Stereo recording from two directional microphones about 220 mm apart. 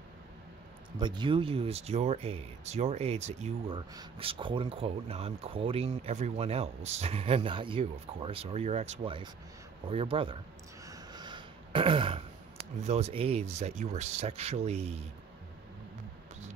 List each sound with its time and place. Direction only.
0.9 s speech: 20° right (ahead or behind)
10.9 s a sound: 20° right (ahead or behind)
12.8 s speech: 30° right (ahead or behind)